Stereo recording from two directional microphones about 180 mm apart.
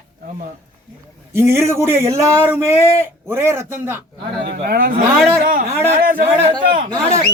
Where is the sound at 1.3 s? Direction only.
15° right (ahead or behind).